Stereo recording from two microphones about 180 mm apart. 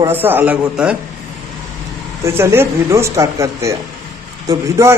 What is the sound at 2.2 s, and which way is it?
Speech, 15° right (ahead or behind).